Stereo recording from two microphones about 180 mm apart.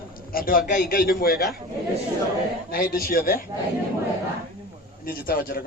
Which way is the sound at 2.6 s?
55° left (ahead or behind).